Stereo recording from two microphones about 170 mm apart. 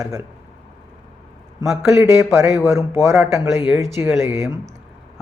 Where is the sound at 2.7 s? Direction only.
15° right (ahead or behind).